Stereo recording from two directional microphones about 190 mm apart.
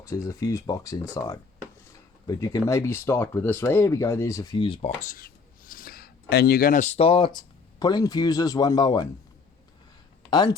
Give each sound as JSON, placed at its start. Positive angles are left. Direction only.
{"t": 0.0, "sound": "speech", "side_deg": 15}
{"t": 4.9, "sound": "a sound", "side_deg": 45}
{"t": 7.3, "sound": "speech", "side_deg": 20}
{"t": 10.2, "sound": "speech", "side_deg": 25}